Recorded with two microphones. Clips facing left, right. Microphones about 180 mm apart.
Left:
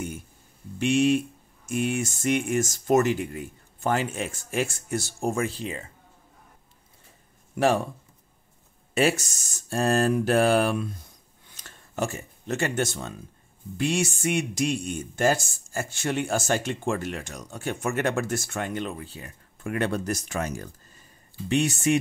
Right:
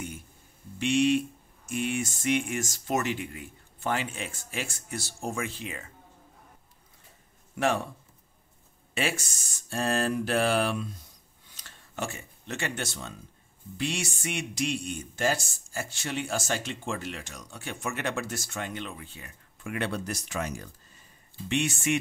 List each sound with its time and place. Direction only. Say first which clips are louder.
0.7 s speech: left 2 dB; 45° left (ahead or behind)
7.5 s speech: left 5 dB; 35° left (ahead or behind)
8.9 s speech: left 8 dB; 40° left (ahead or behind)